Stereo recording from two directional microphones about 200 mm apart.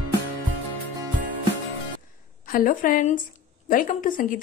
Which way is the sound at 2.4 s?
45° left (ahead or behind).